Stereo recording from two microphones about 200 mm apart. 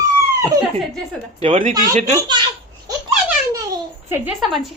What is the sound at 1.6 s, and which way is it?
Speech, 40° right (ahead or behind).